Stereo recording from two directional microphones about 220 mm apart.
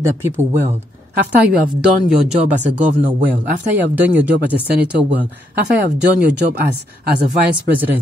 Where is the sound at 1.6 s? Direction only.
35° right (ahead or behind).